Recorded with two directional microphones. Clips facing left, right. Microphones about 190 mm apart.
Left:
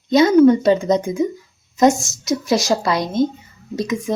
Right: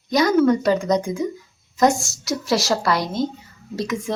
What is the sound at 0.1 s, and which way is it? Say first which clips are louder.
Speech: left 5 dB; 25° left (ahead or behind).